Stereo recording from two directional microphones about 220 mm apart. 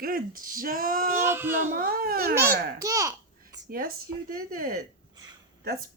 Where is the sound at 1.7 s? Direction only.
45° right (ahead or behind).